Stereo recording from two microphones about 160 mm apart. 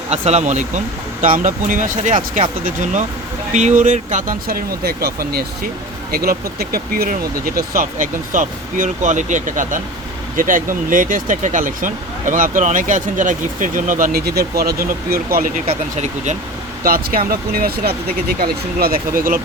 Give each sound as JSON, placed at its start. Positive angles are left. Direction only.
{"t": 0.1, "sound": "speech", "side_deg": -40}
{"t": 1.2, "sound": "speech", "side_deg": -55}
{"t": 3.5, "sound": "speech", "side_deg": -45}
{"t": 4.4, "sound": "speech", "side_deg": -75}
{"t": 7.8, "sound": "speech", "side_deg": -55}
{"t": 15.6, "sound": "speech", "side_deg": -45}
{"t": 16.8, "sound": "speech", "side_deg": -65}